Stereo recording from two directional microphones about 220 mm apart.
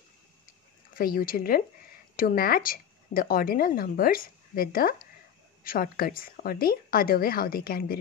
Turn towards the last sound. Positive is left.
turn(degrees=45)  # may be behind; listen again after turning